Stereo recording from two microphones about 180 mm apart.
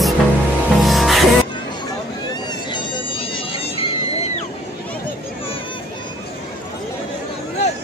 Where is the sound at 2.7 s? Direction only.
30° left (ahead or behind).